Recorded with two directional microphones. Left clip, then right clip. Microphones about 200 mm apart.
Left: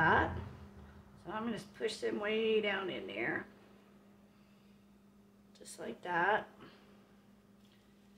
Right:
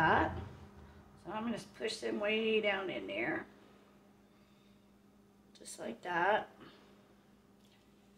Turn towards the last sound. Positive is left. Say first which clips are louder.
# even
turn(degrees=-15)  # may be behind; listen again after turning